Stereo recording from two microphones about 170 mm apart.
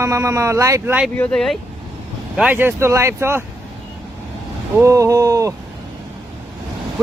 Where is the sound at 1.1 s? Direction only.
10° left (ahead or behind).